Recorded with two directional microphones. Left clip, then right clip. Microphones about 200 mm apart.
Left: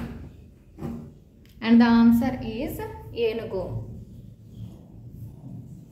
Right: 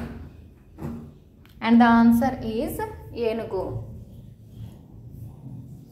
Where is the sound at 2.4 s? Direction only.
20° right (ahead or behind).